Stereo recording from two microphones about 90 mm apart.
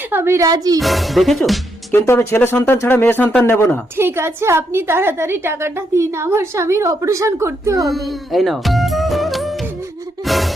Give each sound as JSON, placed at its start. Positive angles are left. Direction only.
{"t": 0.1, "sound": "a sound", "side_deg": -25}
{"t": 0.3, "sound": "speech", "side_deg": -45}
{"t": 0.8, "sound": "speech", "side_deg": 0}
{"t": 1.9, "sound": "speech", "side_deg": 25}
{"t": 3.9, "sound": "a woman's voice", "side_deg": -25}
{"t": 7.9, "sound": "speech", "side_deg": 0}
{"t": 10.2, "sound": "music", "side_deg": 0}